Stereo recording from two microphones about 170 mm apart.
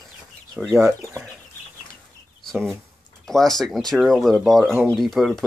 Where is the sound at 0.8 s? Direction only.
15° right (ahead or behind).